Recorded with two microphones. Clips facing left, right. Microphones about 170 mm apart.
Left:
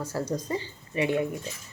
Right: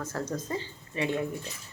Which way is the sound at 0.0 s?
10° left (ahead or behind).